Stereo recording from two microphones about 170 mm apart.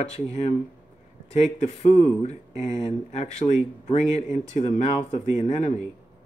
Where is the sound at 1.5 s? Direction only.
45° left (ahead or behind).